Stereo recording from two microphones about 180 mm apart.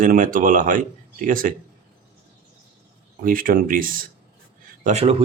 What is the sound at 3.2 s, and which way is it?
Speech, 50° right (ahead or behind).